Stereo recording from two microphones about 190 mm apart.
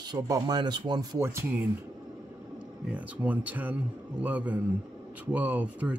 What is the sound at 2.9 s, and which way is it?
Speech, 10° right (ahead or behind).